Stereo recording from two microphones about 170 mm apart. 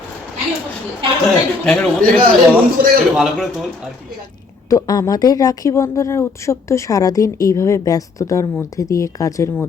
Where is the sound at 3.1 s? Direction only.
Centre (ahead or behind).